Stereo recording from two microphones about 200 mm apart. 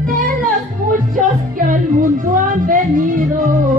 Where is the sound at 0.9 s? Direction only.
40° right (ahead or behind).